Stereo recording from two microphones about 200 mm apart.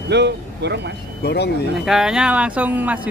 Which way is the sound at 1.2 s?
55° left (ahead or behind).